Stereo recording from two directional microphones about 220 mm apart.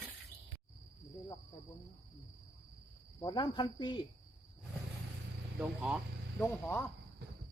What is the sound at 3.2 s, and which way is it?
Cricket, 20° left (ahead or behind).